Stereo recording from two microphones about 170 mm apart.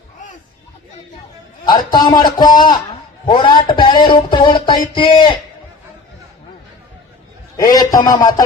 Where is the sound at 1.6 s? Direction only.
25° left (ahead or behind).